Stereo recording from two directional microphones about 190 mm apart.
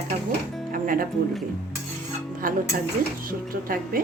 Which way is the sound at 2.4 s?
45° right (ahead or behind).